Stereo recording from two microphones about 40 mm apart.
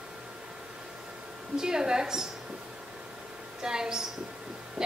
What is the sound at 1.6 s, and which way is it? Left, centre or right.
Speech, centre.